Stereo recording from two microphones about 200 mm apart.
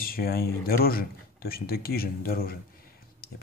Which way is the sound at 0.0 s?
50° left (ahead or behind).